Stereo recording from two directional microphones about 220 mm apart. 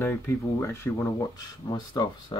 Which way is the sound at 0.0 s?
10° left (ahead or behind).